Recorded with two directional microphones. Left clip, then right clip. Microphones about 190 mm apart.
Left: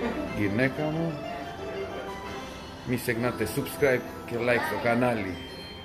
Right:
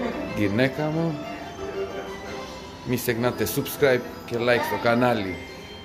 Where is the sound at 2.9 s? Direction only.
20° right (ahead or behind).